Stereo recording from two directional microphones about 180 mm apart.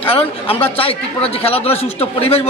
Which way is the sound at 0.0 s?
30° left (ahead or behind).